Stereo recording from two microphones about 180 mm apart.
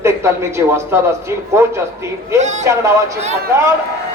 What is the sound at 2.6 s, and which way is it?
Speech, 15° right (ahead or behind).